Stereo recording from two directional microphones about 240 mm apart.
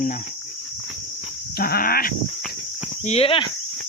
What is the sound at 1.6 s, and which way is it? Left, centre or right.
Cricket, left.